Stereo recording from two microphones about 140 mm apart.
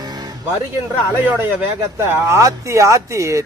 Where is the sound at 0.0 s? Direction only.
30° right (ahead or behind).